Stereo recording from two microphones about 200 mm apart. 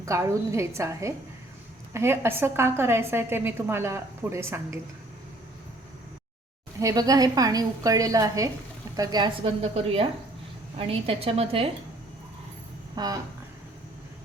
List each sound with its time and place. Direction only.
0.0 s a woman's voice: 15° right (ahead or behind)
6.7 s a woman's voice: 15° right (ahead or behind)
13.0 s a woman's voice: 20° right (ahead or behind)